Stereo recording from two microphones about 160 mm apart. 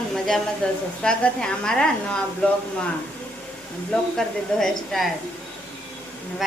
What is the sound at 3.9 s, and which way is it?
Speech, centre (ahead or behind).